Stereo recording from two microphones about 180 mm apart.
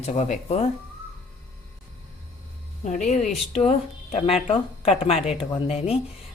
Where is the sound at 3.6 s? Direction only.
35° left (ahead or behind).